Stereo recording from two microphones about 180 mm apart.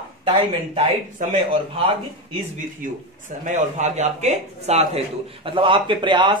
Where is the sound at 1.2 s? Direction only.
50° right (ahead or behind).